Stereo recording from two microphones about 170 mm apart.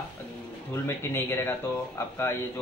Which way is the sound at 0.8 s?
15° left (ahead or behind).